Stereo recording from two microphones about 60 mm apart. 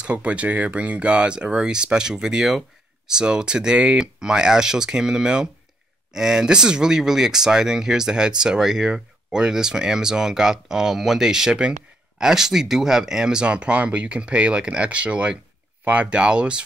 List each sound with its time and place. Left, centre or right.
0.0 s speech: right